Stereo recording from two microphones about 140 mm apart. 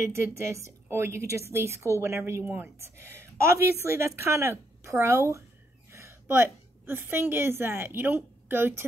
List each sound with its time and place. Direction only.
0.1 s a woman's voice: 20° right (ahead or behind)